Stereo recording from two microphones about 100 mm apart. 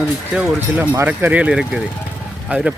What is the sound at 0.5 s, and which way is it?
Speech, 20° right (ahead or behind).